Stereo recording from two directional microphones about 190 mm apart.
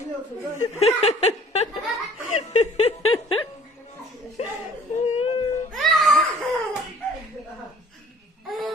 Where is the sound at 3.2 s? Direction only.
25° left (ahead or behind).